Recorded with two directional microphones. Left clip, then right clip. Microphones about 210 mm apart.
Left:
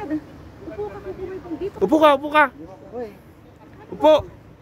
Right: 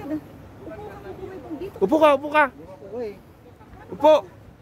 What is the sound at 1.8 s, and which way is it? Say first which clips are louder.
Speech: left 2 dB; centre (ahead or behind).